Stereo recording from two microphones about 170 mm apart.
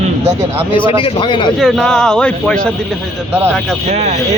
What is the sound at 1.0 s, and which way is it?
Speech, 30° left (ahead or behind).